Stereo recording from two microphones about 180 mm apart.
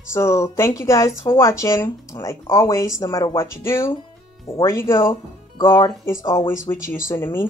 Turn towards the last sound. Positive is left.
turn(degrees=15)  # may be behind; listen again after turning